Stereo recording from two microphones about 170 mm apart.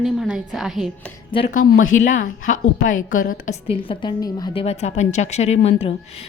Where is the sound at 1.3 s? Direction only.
30° left (ahead or behind).